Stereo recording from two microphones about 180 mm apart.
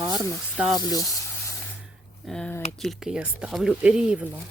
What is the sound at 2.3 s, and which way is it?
Speech, 5° left (ahead or behind).